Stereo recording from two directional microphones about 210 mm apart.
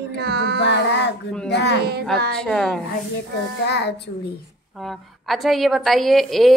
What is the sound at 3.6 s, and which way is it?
Speech, 55° left (ahead or behind).